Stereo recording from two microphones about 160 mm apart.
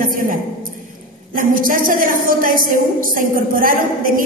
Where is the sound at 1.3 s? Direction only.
60° right (ahead or behind).